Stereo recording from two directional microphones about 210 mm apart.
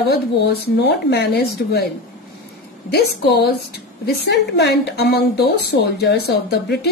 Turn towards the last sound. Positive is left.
turn(degrees=50)  # may be behind; listen again after turning